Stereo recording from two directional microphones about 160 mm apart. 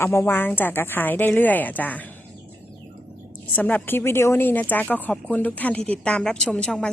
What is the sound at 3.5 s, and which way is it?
Speech, 10° left (ahead or behind).